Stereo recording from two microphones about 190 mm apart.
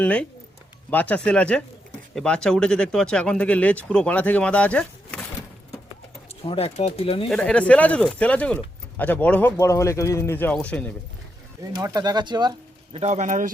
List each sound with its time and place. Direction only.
0.0 s speech: 5° left (ahead or behind)
6.4 s speech: 30° left (ahead or behind)
7.3 s speech: 5° left (ahead or behind)
11.6 s speech: 20° right (ahead or behind)
13.0 s a man's voice: 40° right (ahead or behind)